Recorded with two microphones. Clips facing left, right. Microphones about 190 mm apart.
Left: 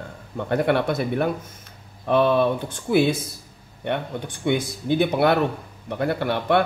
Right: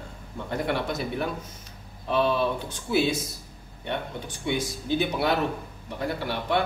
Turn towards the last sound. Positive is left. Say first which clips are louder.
# left 6 dB
turn(degrees=60)  # may be behind; listen again after turning